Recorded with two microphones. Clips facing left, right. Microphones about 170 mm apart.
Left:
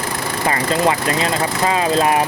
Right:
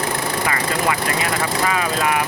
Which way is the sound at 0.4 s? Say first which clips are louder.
Left 6 dB; 25° left (ahead or behind).